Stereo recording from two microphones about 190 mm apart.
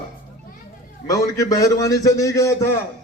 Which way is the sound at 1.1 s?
20° left (ahead or behind).